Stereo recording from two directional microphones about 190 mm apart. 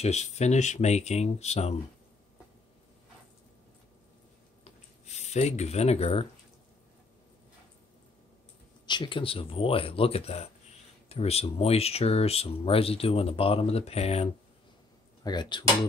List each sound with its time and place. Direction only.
0.0 s speech: 35° left (ahead or behind)
4.6 s a sound: 35° left (ahead or behind)
8.8 s speech: 25° left (ahead or behind)